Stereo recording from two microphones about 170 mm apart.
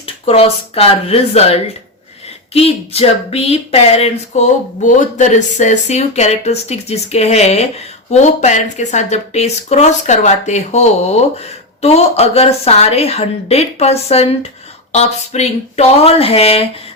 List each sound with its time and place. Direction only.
0.0 s speech: 35° left (ahead or behind)